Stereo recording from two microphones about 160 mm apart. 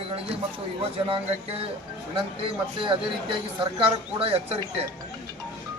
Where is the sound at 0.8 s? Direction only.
35° right (ahead or behind).